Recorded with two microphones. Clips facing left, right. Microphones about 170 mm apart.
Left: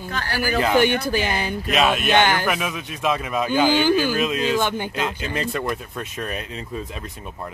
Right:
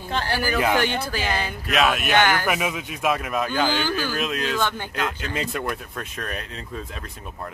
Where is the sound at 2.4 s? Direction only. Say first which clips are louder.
Even; 15° right (ahead or behind).